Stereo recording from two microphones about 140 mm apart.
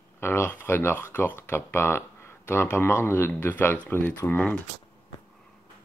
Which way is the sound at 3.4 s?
15° left (ahead or behind).